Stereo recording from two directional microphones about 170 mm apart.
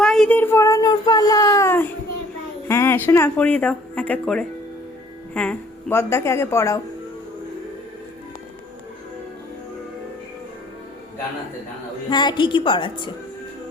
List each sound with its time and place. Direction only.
0.0 s speech: 5° left (ahead or behind)
12.1 s a woman's voice: 25° left (ahead or behind)